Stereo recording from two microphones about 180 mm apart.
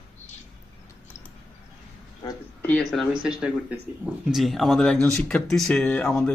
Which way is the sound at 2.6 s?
5° left (ahead or behind).